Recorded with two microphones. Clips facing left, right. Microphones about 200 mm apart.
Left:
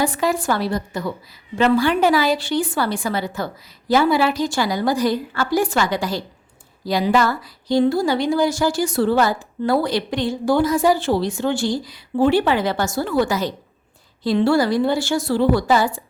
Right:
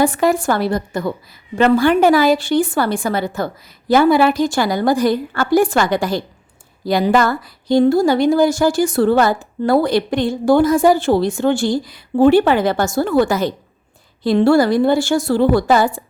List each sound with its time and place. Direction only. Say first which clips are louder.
0.0 s a woman's voice: right 5 dB; 50° right (ahead or behind)